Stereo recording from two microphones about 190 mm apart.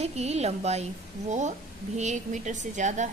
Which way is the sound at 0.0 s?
35° right (ahead or behind).